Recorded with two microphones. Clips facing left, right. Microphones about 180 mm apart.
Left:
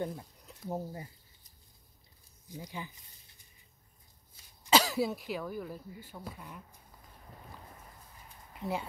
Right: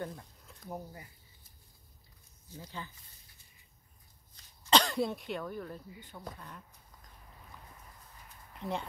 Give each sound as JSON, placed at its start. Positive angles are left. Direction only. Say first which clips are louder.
{"t": 0.7, "sound": "speech", "louder": "left 6 dB", "side_deg": 25}
{"t": 2.4, "sound": "speech", "louder": "left 2 dB", "side_deg": 15}
{"t": 4.6, "sound": "speech", "louder": "left 1 dB", "side_deg": 5}
{"t": 8.5, "sound": "speech", "louder": "left 1 dB", "side_deg": 5}